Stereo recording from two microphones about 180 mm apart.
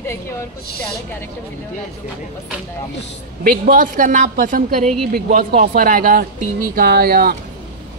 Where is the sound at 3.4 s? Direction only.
50° right (ahead or behind).